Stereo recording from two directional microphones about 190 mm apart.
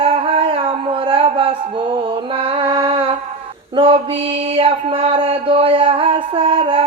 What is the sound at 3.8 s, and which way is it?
Mantra, 30° right (ahead or behind).